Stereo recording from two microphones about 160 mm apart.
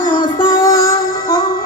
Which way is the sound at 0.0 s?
25° left (ahead or behind).